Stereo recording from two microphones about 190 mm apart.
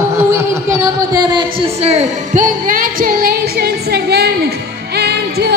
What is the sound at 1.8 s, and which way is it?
Music, 35° right (ahead or behind).